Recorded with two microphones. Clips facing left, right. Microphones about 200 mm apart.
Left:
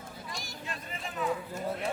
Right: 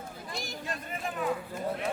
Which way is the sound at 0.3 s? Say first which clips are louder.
Right 6 dB; 60° right (ahead or behind).